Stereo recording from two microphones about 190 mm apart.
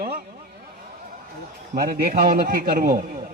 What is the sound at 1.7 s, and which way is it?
A man's voice, 50° right (ahead or behind).